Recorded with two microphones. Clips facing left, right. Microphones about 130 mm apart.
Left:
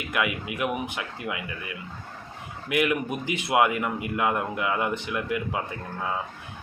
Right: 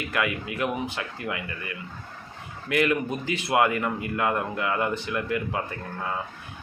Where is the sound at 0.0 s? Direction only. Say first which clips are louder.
Even; 15° left (ahead or behind).